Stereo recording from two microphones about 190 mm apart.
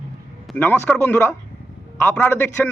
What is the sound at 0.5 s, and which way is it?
A man's voice, 10° left (ahead or behind).